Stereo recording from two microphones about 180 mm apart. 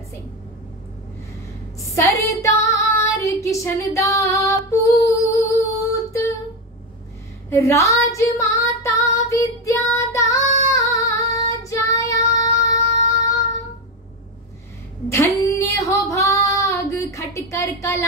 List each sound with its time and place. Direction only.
2.0 s female singing: 15° left (ahead or behind)
7.4 s female singing: 15° left (ahead or behind)
11.5 s child singing: 15° left (ahead or behind)
15.0 s child singing: 15° left (ahead or behind)